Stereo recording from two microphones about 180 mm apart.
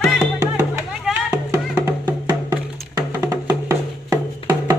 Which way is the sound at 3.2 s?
20° right (ahead or behind).